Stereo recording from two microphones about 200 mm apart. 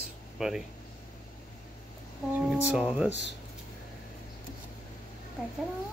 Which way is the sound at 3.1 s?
65° right (ahead or behind).